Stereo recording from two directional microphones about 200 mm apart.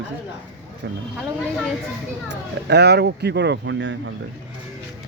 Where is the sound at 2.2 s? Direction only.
55° right (ahead or behind).